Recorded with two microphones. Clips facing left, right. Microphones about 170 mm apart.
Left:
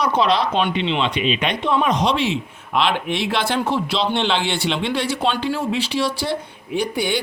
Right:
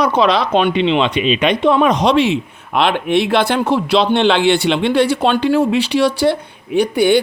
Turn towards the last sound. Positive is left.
turn(degrees=-60)  # may be behind; listen again after turning